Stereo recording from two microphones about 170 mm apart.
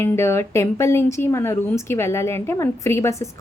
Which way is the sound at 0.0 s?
15° left (ahead or behind).